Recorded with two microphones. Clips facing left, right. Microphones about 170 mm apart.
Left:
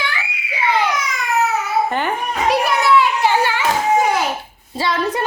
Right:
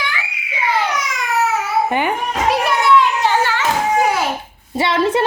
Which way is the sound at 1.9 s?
15° right (ahead or behind).